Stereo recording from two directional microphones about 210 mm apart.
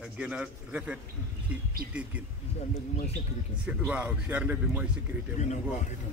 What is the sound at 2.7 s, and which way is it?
Speech, 30° left (ahead or behind).